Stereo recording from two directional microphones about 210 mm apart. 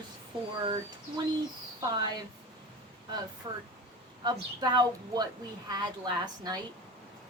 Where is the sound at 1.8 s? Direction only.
20° right (ahead or behind).